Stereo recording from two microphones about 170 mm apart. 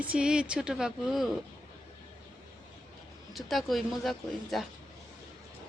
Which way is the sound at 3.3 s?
Centre (ahead or behind).